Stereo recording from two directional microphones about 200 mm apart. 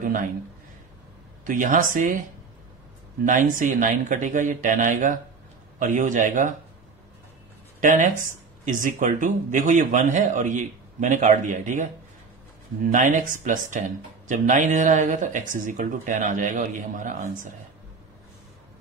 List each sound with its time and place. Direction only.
0.0 s speech: 45° right (ahead or behind)
1.4 s speech: 40° right (ahead or behind)
3.3 s speech: 40° right (ahead or behind)
7.8 s speech: 40° right (ahead or behind)
12.9 s speech: 40° right (ahead or behind)